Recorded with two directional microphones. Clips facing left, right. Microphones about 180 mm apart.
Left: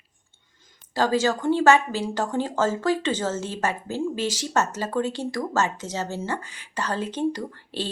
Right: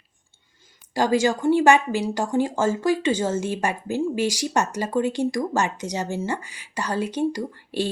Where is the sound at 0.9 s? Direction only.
15° right (ahead or behind).